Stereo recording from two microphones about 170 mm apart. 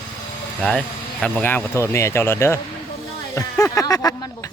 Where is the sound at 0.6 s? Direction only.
5° left (ahead or behind).